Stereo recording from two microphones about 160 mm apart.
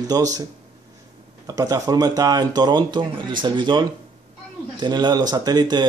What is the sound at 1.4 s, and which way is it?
Speech, 20° right (ahead or behind).